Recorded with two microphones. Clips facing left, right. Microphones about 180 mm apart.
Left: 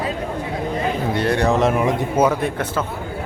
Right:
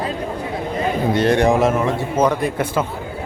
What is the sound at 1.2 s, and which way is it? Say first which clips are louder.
Speech: right 3 dB; 20° right (ahead or behind).